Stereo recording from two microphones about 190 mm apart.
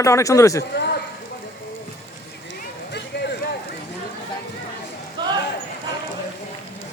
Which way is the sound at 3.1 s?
65° left (ahead or behind).